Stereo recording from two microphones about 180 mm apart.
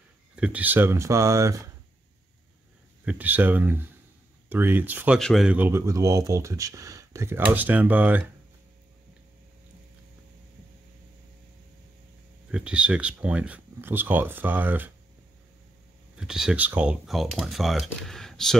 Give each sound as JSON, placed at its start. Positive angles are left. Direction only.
{"t": 0.4, "sound": "speech", "side_deg": -10}
{"t": 3.1, "sound": "speech", "side_deg": -10}
{"t": 12.4, "sound": "speech", "side_deg": -5}
{"t": 16.2, "sound": "speech", "side_deg": -5}